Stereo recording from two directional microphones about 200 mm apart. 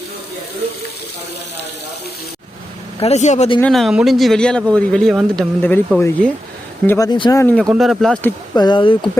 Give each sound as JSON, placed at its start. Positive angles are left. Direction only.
{"t": 3.0, "sound": "speech", "side_deg": 35}
{"t": 3.6, "sound": "speech", "side_deg": 0}
{"t": 8.5, "sound": "speech", "side_deg": 20}